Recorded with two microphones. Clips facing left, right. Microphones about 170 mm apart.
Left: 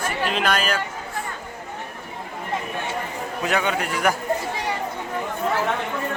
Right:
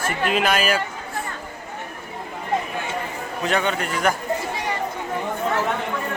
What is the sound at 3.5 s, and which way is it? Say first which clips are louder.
Speech: right 1 dB; 10° left (ahead or behind).